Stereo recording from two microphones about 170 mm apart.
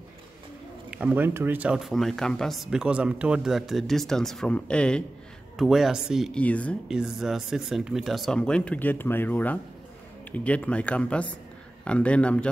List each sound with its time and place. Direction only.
0.8 s speech: 10° right (ahead or behind); by 6.8 s 10° left (ahead or behind)
6.9 s speech: 5° right (ahead or behind)